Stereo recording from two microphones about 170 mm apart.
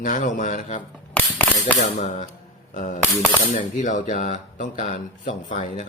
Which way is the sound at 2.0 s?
45° left (ahead or behind).